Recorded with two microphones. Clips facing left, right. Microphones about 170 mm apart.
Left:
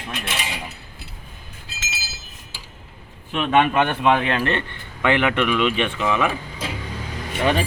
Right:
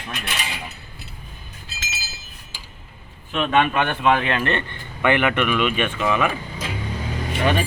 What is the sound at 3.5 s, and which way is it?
Speech, 15° left (ahead or behind).